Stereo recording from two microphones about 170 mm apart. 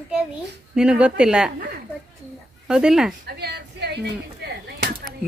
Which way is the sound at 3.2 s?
70° right (ahead or behind).